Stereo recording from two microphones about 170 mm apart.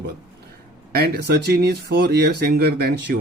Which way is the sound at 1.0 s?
75° right (ahead or behind).